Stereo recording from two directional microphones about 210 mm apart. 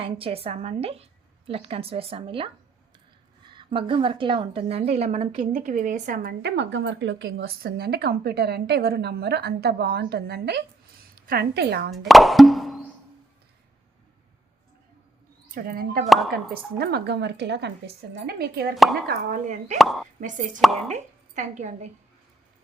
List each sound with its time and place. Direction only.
0.0 s a woman's voice: 25° right (ahead or behind)
3.5 s a woman's voice: 25° right (ahead or behind)
6.4 s a woman's voice: 55° right (ahead or behind)
12.0 s plop: centre (ahead or behind)
15.5 s speech: 45° right (ahead or behind)
16.0 s speech: centre (ahead or behind)
16.7 s speech: 50° right (ahead or behind)
19.8 s speech: centre (ahead or behind)
20.2 s speech: 35° right (ahead or behind)
20.6 s speech: centre (ahead or behind)
20.9 s a woman's voice: 35° right (ahead or behind)